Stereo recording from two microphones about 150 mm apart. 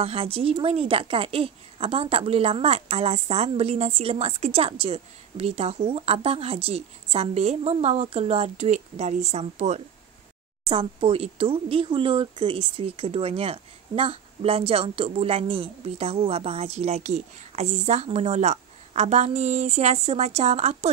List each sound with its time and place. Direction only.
0.0 s speech: 40° right (ahead or behind)